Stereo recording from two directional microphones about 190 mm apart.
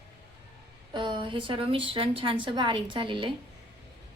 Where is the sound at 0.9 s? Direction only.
25° right (ahead or behind).